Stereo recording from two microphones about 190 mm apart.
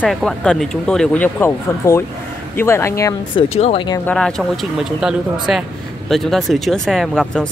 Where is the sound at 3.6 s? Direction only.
30° left (ahead or behind).